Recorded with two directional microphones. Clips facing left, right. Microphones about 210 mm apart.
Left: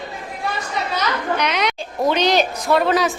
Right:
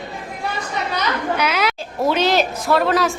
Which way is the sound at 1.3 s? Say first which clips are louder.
Right 1 dB; 5° right (ahead or behind).